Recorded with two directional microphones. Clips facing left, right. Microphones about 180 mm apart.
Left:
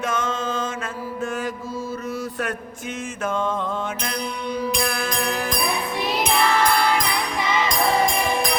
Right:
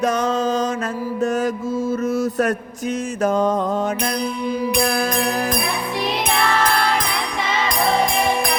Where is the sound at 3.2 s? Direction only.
40° right (ahead or behind).